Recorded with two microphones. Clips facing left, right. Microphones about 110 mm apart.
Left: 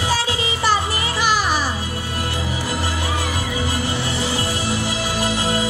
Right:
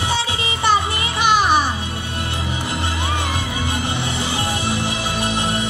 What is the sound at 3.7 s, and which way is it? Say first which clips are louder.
Music: even; 20° right (ahead or behind).